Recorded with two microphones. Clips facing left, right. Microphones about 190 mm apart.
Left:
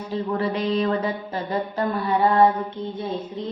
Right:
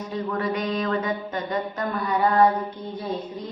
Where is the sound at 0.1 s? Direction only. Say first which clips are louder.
Left 2 dB; 30° left (ahead or behind).